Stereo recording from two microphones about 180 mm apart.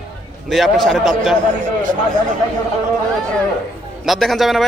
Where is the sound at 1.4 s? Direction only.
45° right (ahead or behind).